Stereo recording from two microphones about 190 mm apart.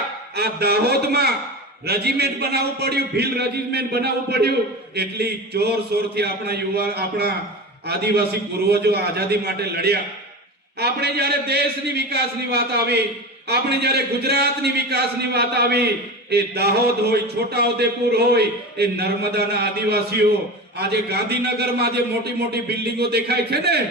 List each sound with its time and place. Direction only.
0.3 s speech: 55° right (ahead or behind)